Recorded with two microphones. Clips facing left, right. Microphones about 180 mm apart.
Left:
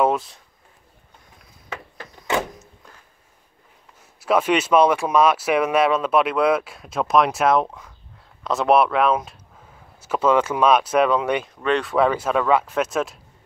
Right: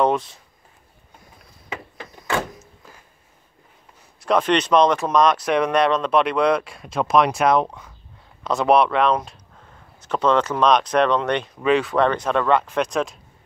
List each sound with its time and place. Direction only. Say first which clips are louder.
0.0 s speech: even; centre (ahead or behind)
2.2 s vehicle: left 1 dB; 20° left (ahead or behind)
4.2 s speech: even; 5° left (ahead or behind)